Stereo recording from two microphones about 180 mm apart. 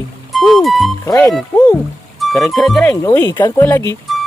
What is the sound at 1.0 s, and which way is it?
Speech, 15° left (ahead or behind).